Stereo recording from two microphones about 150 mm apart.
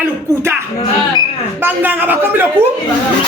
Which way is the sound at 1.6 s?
15° right (ahead or behind).